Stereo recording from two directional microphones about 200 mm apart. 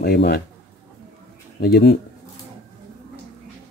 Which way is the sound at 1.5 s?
50° left (ahead or behind).